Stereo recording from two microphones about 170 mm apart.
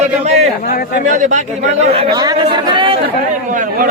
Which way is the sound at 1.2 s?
45° right (ahead or behind).